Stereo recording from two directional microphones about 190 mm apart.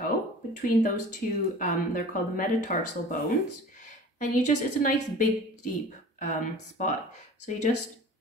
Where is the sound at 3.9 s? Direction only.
40° left (ahead or behind).